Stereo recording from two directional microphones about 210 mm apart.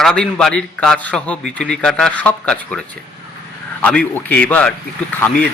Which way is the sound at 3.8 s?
10° left (ahead or behind).